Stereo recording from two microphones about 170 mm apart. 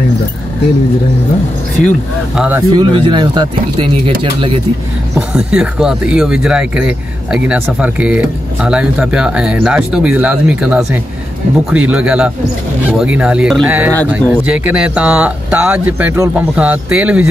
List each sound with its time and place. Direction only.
1.8 s speech: 50° left (ahead or behind)
2.3 s speech: 5° right (ahead or behind)
2.7 s speech: 25° right (ahead or behind)
5.3 s speech: 5° right (ahead or behind)